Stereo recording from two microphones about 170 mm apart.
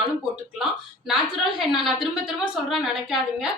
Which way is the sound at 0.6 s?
5° right (ahead or behind).